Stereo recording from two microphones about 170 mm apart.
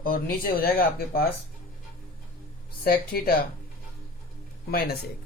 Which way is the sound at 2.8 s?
60° left (ahead or behind).